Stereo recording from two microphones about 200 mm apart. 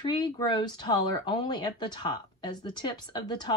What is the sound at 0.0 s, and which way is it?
Speech, 20° left (ahead or behind).